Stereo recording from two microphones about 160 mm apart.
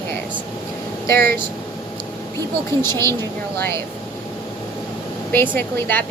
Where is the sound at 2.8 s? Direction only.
15° left (ahead or behind).